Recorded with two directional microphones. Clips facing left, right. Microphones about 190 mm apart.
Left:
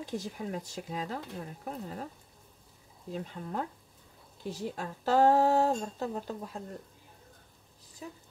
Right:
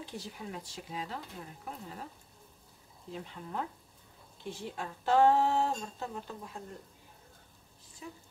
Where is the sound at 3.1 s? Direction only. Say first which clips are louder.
Left 3 dB; 40° left (ahead or behind).